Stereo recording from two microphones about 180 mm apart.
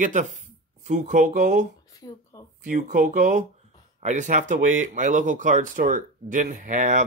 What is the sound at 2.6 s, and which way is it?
Speech, 45° right (ahead or behind).